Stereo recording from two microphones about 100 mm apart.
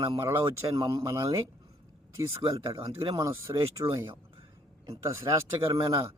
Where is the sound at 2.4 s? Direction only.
55° right (ahead or behind).